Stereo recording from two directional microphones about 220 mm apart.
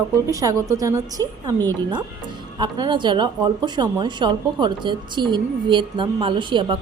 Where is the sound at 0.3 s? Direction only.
15° right (ahead or behind).